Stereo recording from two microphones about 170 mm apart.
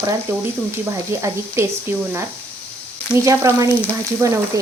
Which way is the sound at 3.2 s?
20° right (ahead or behind).